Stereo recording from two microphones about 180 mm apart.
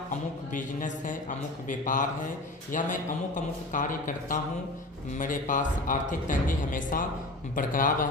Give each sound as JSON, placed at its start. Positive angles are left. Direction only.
{"t": 0.5, "sound": "speech", "side_deg": 45}